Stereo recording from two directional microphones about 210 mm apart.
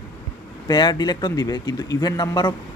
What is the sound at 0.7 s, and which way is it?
Speech, 20° left (ahead or behind).